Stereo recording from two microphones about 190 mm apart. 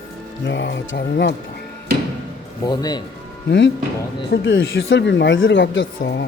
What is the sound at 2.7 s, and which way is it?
Speech, 20° left (ahead or behind).